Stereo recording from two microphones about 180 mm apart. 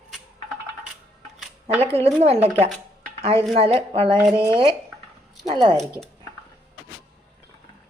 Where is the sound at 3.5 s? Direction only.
30° right (ahead or behind).